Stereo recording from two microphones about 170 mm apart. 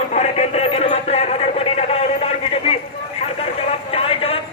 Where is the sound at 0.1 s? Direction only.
40° left (ahead or behind).